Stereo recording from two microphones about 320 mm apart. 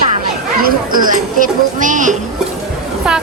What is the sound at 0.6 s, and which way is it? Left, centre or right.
Speech, right.